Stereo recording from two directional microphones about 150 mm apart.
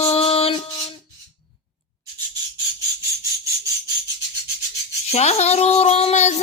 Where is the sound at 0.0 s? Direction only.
40° left (ahead or behind).